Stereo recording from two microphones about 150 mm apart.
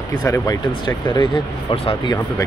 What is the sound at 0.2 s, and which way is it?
Speech, 25° left (ahead or behind).